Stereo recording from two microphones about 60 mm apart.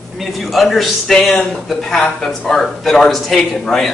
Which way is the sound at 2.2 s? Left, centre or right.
Centre.